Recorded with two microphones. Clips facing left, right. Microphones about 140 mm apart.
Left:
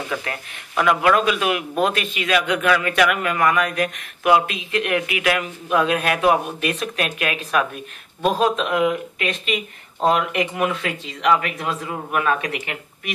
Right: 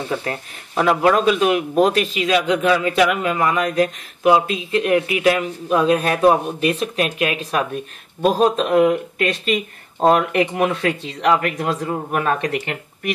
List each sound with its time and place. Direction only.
0.0 s speech: 30° right (ahead or behind)